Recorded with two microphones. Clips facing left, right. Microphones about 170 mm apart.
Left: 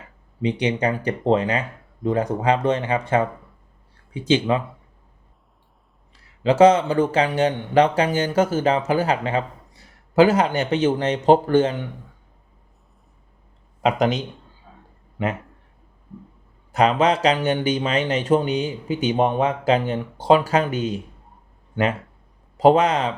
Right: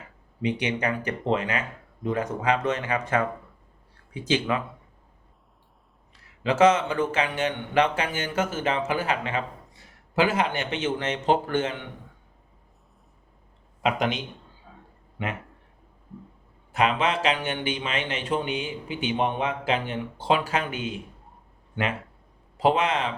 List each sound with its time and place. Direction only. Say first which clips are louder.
0.4 s speech: left 5 dB; 30° left (ahead or behind)
6.4 s speech: left 5 dB; 35° left (ahead or behind)
13.8 s speech: left 5 dB; 40° left (ahead or behind)
16.7 s speech: left 6 dB; 40° left (ahead or behind)
22.5 s speech: left 7 dB; 40° left (ahead or behind)